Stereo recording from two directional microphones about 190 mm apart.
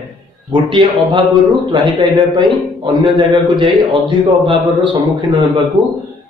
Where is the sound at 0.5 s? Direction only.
25° right (ahead or behind).